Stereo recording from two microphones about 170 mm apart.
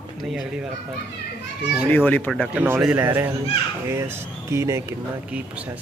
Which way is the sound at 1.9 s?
10° left (ahead or behind).